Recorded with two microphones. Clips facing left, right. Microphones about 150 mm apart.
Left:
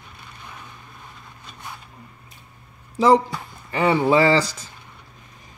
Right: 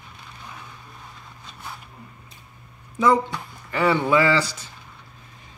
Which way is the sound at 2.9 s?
30° left (ahead or behind).